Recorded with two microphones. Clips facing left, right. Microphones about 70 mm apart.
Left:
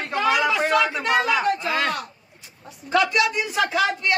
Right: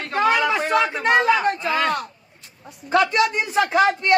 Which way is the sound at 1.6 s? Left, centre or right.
Centre.